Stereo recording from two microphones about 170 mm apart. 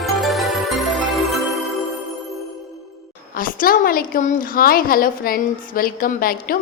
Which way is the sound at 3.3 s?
55° left (ahead or behind).